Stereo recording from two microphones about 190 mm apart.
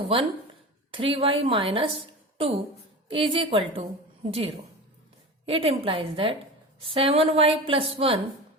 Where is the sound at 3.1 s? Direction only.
25° right (ahead or behind).